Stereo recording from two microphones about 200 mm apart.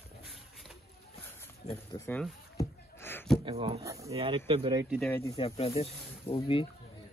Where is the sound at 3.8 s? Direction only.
15° right (ahead or behind).